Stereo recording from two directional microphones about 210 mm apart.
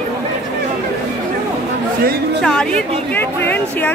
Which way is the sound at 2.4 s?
5° left (ahead or behind).